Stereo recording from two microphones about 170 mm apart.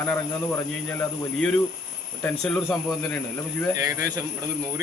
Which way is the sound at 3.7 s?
20° right (ahead or behind).